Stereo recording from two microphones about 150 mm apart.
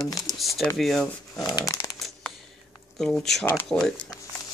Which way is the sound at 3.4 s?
15° left (ahead or behind).